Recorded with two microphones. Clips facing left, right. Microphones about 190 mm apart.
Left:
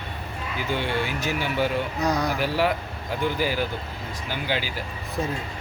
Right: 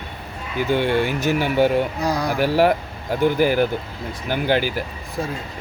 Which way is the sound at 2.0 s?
10° right (ahead or behind).